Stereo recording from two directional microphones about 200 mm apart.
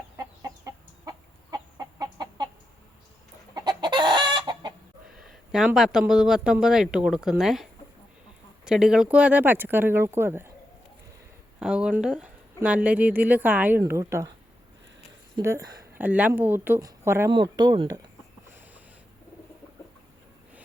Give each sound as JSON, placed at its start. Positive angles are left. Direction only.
{"t": 0.2, "sound": "chicken", "side_deg": -15}
{"t": 3.5, "sound": "chicken", "side_deg": -20}
{"t": 5.2, "sound": "a woman's voice", "side_deg": -5}
{"t": 11.6, "sound": "a woman's voice", "side_deg": -5}
{"t": 15.4, "sound": "a woman's voice", "side_deg": -15}